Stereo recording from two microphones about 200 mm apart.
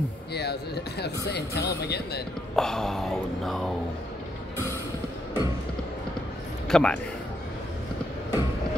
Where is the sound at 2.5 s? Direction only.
Centre (ahead or behind).